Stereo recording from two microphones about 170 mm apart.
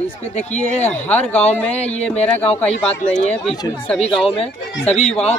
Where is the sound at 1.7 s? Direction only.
40° left (ahead or behind).